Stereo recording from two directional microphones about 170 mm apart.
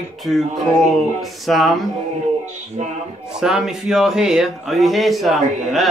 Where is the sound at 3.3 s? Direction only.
5° right (ahead or behind).